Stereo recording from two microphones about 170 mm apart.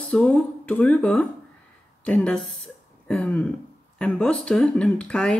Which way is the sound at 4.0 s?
5° left (ahead or behind).